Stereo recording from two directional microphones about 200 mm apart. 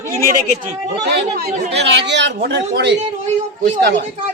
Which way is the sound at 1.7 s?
60° right (ahead or behind).